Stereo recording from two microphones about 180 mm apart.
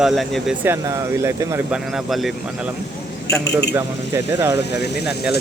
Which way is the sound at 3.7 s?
15° right (ahead or behind).